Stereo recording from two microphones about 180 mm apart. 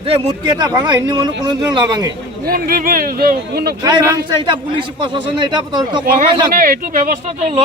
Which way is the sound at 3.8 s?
20° right (ahead or behind).